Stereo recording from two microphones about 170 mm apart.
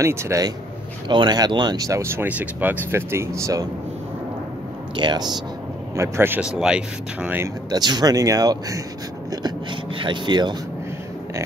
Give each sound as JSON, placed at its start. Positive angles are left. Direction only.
{"t": 0.0, "sound": "speech", "side_deg": -15}
{"t": 4.9, "sound": "speech", "side_deg": -25}
{"t": 5.9, "sound": "speech", "side_deg": -15}
{"t": 7.7, "sound": "speech", "side_deg": -25}
{"t": 9.3, "sound": "a sound", "side_deg": -25}